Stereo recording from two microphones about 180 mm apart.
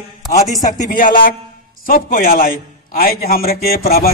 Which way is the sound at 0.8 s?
50° left (ahead or behind).